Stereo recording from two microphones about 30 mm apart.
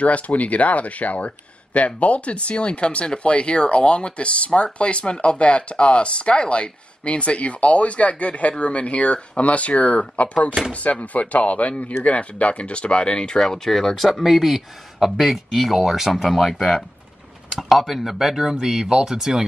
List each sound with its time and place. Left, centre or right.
0.0 s speech: left
13.7 s speech: centre
14.2 s speech: centre
17.6 s speech: centre